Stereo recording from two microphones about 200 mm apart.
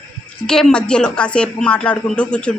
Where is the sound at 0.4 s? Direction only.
5° left (ahead or behind).